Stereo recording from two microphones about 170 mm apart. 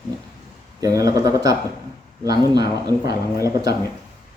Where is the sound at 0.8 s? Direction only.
20° right (ahead or behind).